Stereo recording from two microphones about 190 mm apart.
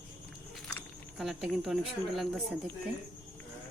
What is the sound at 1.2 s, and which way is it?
Speech, centre (ahead or behind).